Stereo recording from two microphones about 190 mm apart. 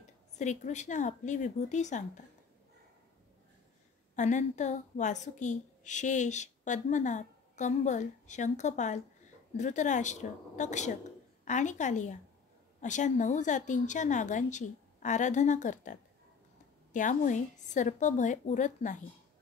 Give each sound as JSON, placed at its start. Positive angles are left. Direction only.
{"t": 0.4, "sound": "a woman's voice", "side_deg": 40}
{"t": 4.1, "sound": "a woman's voice", "side_deg": 40}